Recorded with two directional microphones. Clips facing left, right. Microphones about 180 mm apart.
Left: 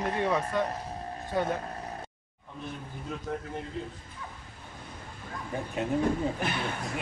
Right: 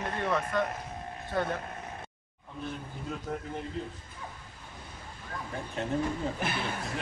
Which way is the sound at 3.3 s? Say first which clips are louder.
Left 2 dB; centre (ahead or behind).